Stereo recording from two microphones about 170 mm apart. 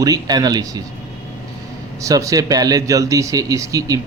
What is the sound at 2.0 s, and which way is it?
Speech, 20° right (ahead or behind).